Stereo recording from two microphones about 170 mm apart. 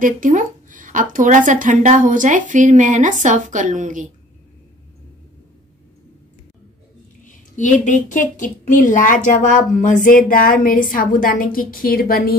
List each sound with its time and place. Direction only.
0.0 s a woman's voice: 50° right (ahead or behind)
7.2 s a woman's voice: 45° left (ahead or behind)